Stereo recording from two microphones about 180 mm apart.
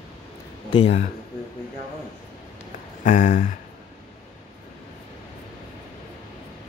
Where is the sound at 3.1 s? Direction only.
45° left (ahead or behind).